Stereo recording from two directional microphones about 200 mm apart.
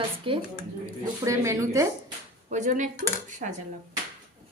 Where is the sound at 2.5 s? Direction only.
35° right (ahead or behind).